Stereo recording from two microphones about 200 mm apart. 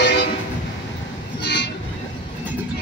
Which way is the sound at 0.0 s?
60° left (ahead or behind).